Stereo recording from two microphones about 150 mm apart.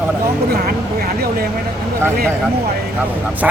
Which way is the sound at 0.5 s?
90° right.